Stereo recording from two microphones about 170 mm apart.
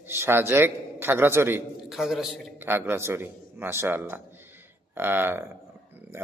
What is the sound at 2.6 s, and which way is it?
A man's voice, 10° right (ahead or behind).